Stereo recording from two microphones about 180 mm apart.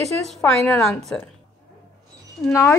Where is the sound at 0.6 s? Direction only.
15° left (ahead or behind).